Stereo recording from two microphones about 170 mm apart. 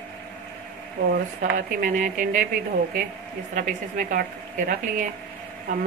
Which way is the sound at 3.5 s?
50° right (ahead or behind).